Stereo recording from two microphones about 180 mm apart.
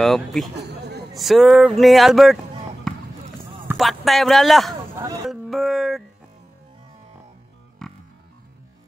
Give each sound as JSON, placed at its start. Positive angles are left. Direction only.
{"t": 0.0, "sound": "speech", "side_deg": 0}
{"t": 0.6, "sound": "a sound", "side_deg": -65}
{"t": 1.1, "sound": "speech", "side_deg": 0}
{"t": 2.9, "sound": "basketball bounce", "side_deg": 0}
{"t": 3.7, "sound": "speech", "side_deg": 0}
{"t": 4.9, "sound": "speech", "side_deg": -20}
{"t": 5.3, "sound": "a sound", "side_deg": 0}
{"t": 7.8, "sound": "music", "side_deg": 0}